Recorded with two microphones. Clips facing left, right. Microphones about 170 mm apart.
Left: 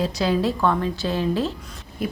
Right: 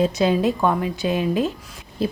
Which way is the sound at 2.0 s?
30° right (ahead or behind).